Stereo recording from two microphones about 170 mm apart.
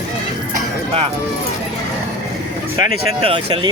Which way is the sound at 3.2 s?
30° right (ahead or behind).